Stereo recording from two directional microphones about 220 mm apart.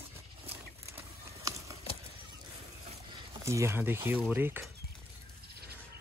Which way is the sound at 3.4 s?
15° right (ahead or behind).